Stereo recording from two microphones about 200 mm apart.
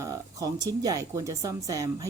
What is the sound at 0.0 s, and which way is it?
Speech, 15° right (ahead or behind).